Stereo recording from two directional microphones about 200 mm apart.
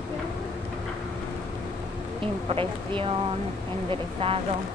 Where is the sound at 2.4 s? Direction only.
30° right (ahead or behind).